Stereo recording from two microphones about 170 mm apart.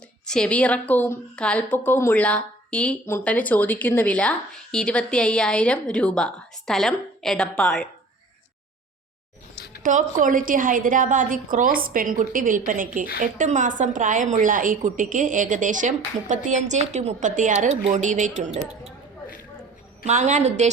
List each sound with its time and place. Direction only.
0.3 s a woman's voice: 5° left (ahead or behind)
9.8 s a woman's voice: 50° right (ahead or behind)
20.1 s a woman's voice: 45° right (ahead or behind)